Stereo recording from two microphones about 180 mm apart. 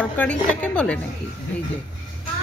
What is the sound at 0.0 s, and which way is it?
Speech, 10° left (ahead or behind).